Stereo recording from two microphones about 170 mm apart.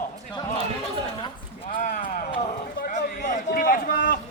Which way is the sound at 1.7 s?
55° left (ahead or behind).